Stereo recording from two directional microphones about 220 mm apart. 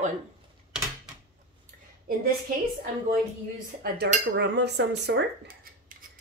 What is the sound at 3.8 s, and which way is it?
Cutlery, 45° right (ahead or behind).